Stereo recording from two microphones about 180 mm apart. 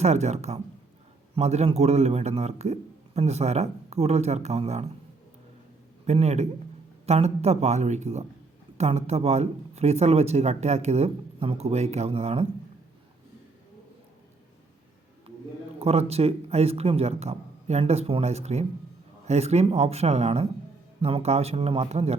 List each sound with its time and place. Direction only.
0.0 s speech: 40° right (ahead or behind)
6.1 s speech: 35° right (ahead or behind)
15.8 s speech: 35° right (ahead or behind)